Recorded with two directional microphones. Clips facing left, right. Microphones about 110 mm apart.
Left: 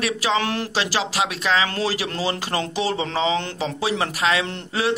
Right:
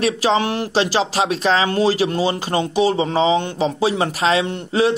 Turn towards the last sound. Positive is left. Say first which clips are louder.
# right 6 dB
turn(degrees=-25)  # may be behind; listen again after turning